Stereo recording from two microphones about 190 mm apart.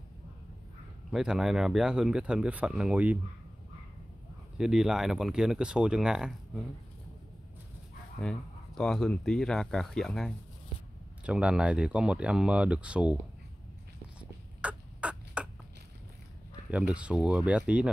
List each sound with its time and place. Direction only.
1.1 s speech: centre (ahead or behind)
4.6 s speech: centre (ahead or behind)
8.2 s speech: 5° left (ahead or behind)
14.6 s a sound: 5° right (ahead or behind)
16.7 s speech: 5° right (ahead or behind)